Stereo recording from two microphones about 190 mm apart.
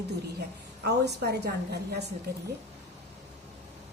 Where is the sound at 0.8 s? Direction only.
60° right (ahead or behind).